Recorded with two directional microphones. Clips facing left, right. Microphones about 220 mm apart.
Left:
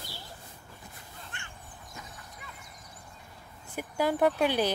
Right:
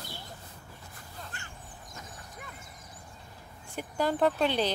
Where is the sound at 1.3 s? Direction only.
40° right (ahead or behind).